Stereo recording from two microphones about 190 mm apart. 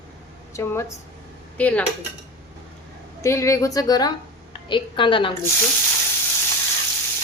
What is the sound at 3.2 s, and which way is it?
A woman's voice, 15° left (ahead or behind).